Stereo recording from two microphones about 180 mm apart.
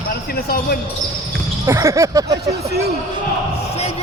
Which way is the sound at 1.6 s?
15° right (ahead or behind).